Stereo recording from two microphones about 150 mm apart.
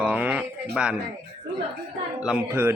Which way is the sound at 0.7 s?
5° right (ahead or behind).